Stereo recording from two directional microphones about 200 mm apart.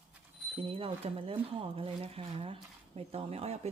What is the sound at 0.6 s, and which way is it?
Speech, 30° right (ahead or behind).